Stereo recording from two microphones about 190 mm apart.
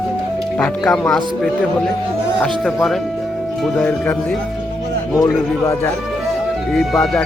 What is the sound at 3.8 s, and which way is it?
Speech, 10° left (ahead or behind).